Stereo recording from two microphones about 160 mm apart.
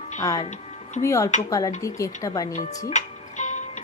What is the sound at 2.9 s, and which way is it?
Music, 50° left (ahead or behind).